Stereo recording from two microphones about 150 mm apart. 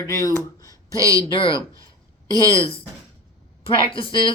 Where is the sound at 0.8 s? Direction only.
20° right (ahead or behind).